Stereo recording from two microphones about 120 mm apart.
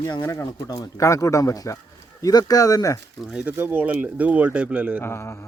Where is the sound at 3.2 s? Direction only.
10° right (ahead or behind).